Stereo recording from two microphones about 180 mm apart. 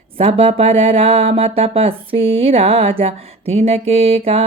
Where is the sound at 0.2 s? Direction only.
35° right (ahead or behind).